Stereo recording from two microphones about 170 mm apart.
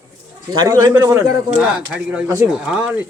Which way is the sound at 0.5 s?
20° right (ahead or behind).